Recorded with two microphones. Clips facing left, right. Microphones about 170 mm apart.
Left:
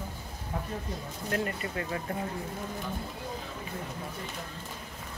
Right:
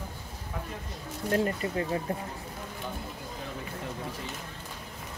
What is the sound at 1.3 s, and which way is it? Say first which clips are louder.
Speech: right 5 dB; 30° right (ahead or behind).